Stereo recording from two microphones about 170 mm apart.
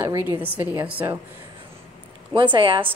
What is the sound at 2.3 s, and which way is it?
Speech, 30° right (ahead or behind).